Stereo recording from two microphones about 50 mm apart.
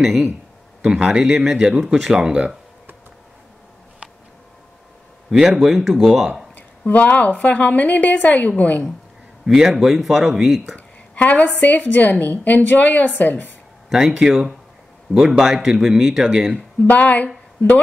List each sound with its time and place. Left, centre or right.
1.2 s a man's voice: centre
1.6 s speech: centre
5.3 s speech: centre
6.8 s a woman's voice: left
9.5 s a man's voice: centre
11.1 s a woman's voice: left
13.8 s speech: centre
16.5 s speech: left